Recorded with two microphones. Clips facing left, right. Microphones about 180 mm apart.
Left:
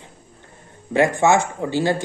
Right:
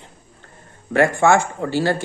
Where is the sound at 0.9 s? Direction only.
15° left (ahead or behind).